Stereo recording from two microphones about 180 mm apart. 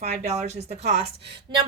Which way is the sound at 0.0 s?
35° right (ahead or behind).